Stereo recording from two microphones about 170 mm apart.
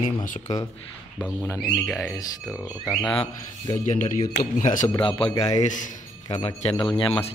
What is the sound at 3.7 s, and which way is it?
A man's voice, 45° left (ahead or behind).